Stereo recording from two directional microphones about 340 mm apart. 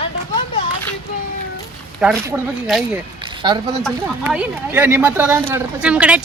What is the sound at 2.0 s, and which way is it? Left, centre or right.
Speech, centre.